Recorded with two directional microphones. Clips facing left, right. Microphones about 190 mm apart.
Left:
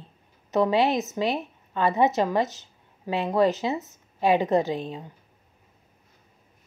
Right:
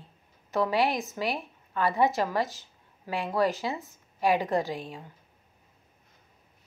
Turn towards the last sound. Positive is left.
turn(degrees=20)  # may be behind; listen again after turning